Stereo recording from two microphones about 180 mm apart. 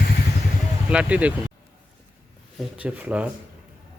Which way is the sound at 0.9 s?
5° right (ahead or behind).